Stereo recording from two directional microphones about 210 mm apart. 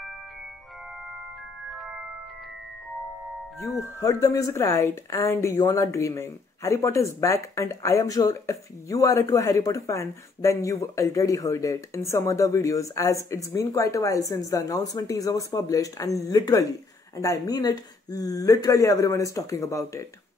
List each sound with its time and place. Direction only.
3.6 s speech: 15° left (ahead or behind)